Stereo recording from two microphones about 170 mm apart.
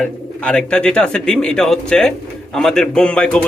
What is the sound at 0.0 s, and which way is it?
Speech, 5° left (ahead or behind).